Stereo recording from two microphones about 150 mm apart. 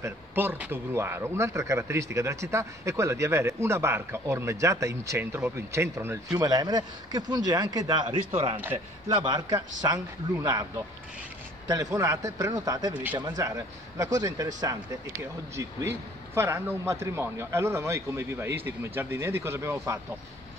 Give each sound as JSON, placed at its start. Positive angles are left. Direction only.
{"t": 0.0, "sound": "speech", "side_deg": -15}
{"t": 8.5, "sound": "speech", "side_deg": -15}
{"t": 9.2, "sound": "speech", "side_deg": -25}